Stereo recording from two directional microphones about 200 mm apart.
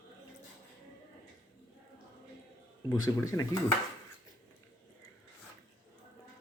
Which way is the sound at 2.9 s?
20° left (ahead or behind).